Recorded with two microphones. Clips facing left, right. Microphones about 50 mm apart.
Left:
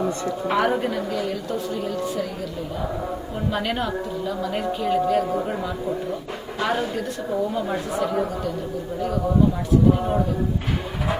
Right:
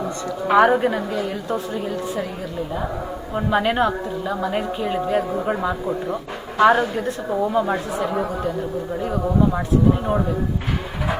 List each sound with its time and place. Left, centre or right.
0.4 s a woman's voice: right
3.3 s a woman's voice: right
5.5 s speech: right
7.3 s a woman's voice: centre